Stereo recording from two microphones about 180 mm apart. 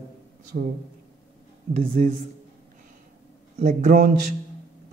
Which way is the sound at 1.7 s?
35° right (ahead or behind).